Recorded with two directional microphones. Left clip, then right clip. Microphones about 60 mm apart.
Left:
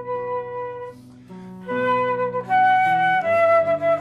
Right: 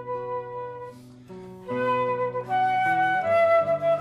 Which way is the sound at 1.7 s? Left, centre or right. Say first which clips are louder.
Left 4 dB; centre.